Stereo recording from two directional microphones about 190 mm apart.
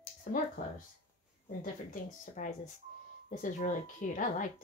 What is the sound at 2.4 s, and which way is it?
Speech, 45° left (ahead or behind).